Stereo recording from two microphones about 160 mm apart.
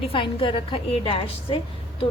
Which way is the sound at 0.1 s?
35° left (ahead or behind).